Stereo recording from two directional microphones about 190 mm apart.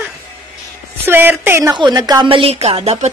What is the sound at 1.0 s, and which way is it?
A woman's voice, 10° right (ahead or behind).